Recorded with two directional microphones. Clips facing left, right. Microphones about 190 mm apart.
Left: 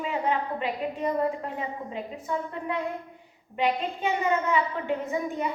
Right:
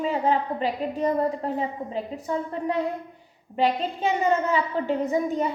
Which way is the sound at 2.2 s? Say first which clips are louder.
Right 3 dB; 35° right (ahead or behind).